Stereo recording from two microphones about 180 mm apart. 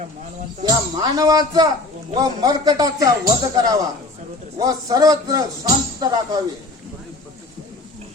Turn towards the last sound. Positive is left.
turn(degrees=-20)  # may be behind; listen again after turning